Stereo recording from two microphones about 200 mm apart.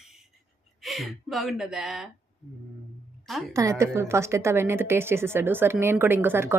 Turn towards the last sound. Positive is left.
turn(degrees=-10)  # may be behind; listen again after turning